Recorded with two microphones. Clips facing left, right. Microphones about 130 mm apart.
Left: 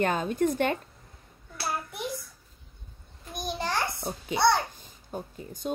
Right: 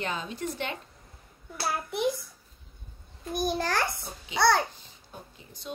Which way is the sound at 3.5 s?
70° right (ahead or behind).